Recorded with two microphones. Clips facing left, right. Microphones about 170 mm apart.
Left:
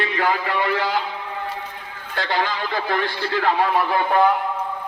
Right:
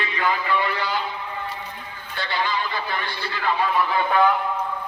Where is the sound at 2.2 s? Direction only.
90° left.